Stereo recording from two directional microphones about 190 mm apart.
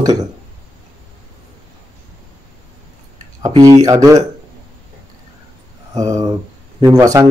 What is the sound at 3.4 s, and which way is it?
Speech, 20° right (ahead or behind).